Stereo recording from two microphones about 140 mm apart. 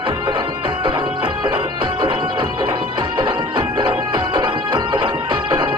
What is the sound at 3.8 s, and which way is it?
Music, 40° right (ahead or behind).